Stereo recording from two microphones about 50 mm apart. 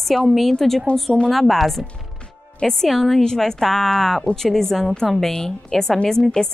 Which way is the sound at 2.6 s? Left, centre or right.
Centre.